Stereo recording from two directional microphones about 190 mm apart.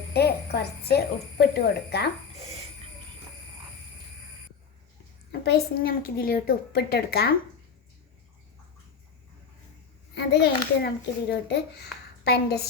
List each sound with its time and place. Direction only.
0.1 s a child's voice: 60° left (ahead or behind)
5.3 s a woman's voice: 55° left (ahead or behind)
10.2 s a child's voice: 60° left (ahead or behind)